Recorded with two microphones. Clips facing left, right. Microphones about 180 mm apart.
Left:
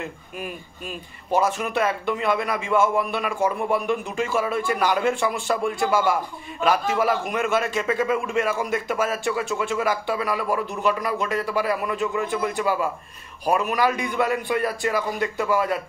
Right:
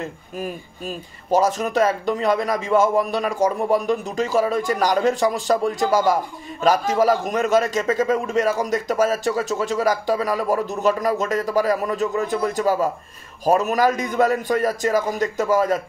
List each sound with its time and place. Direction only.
0.0 s a man's voice: 40° right (ahead or behind)